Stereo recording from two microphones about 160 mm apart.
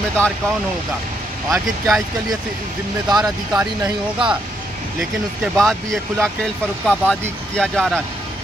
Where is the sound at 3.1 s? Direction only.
25° right (ahead or behind).